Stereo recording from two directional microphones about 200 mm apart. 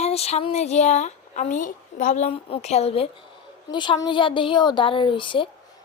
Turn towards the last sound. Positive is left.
turn(degrees=25)  # may be behind; listen again after turning